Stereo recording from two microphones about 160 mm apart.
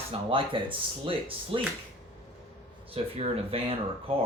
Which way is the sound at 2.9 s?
35° right (ahead or behind).